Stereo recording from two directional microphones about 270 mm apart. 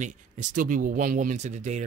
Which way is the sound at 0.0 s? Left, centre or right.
Right.